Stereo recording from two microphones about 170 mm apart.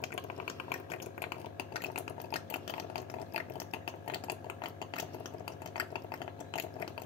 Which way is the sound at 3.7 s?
30° left (ahead or behind).